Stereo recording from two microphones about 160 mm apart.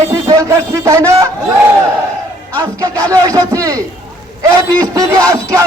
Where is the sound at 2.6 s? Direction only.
20° right (ahead or behind).